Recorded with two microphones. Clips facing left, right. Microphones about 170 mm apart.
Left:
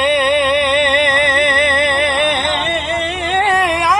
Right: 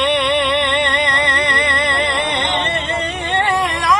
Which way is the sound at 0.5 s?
15° left (ahead or behind).